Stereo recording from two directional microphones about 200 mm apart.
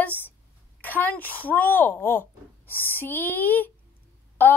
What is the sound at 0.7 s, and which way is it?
A woman's voice, 10° left (ahead or behind).